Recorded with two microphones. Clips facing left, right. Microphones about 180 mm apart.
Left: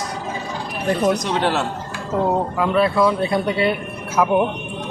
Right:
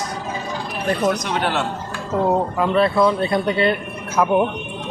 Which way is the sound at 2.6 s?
5° left (ahead or behind).